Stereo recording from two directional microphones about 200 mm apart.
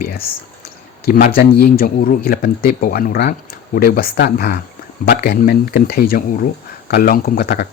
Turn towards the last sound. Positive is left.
turn(degrees=50)  # may be behind; listen again after turning